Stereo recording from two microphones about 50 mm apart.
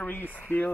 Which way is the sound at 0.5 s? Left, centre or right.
Left.